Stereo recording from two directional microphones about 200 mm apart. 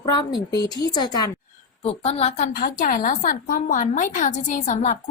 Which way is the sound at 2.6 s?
45° left (ahead or behind).